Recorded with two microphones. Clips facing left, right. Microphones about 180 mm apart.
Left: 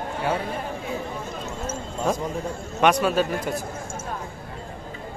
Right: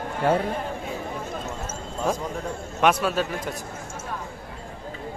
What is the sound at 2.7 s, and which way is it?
Speech, centre (ahead or behind).